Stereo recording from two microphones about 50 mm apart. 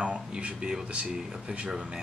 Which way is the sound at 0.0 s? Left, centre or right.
Right.